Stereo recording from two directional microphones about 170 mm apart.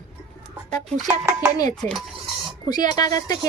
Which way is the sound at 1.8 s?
Centre (ahead or behind).